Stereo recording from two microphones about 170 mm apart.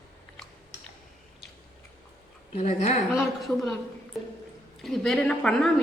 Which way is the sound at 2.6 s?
40° left (ahead or behind).